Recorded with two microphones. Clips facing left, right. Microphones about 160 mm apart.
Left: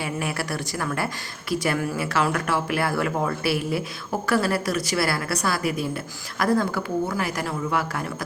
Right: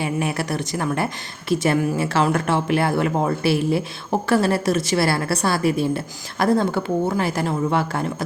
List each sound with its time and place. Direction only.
0.0 s a woman's voice: 20° right (ahead or behind)